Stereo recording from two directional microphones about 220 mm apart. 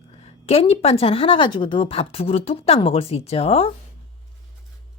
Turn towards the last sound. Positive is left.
turn(degrees=25)  # may be behind; listen again after turning